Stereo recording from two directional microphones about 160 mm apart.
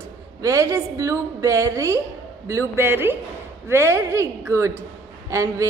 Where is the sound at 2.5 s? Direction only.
15° right (ahead or behind).